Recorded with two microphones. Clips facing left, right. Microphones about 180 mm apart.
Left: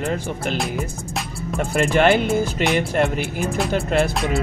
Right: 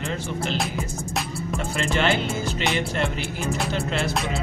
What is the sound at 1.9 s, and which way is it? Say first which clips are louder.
Music: left 7 dB; 55° left (ahead or behind).